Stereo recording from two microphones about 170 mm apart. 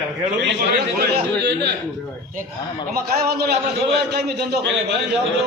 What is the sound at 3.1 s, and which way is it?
A man's voice, 65° right (ahead or behind).